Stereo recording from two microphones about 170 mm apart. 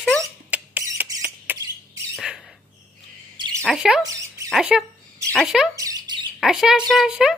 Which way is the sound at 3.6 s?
Centre (ahead or behind).